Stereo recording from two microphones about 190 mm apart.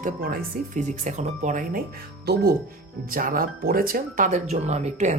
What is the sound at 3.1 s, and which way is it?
Speech, 50° right (ahead or behind).